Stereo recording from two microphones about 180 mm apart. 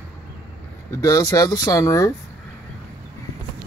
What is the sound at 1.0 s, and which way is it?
Speech, 20° left (ahead or behind).